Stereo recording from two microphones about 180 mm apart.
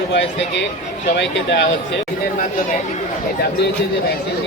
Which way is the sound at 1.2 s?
75° left (ahead or behind).